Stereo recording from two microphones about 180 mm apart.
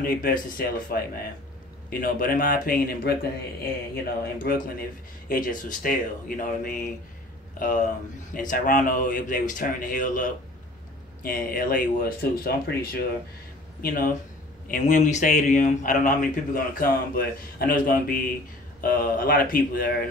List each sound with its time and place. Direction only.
0.0 s a man's voice: 50° left (ahead or behind)
11.2 s a man's voice: 55° left (ahead or behind)